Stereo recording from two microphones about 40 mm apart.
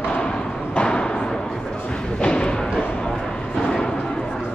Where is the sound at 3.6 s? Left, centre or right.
Centre.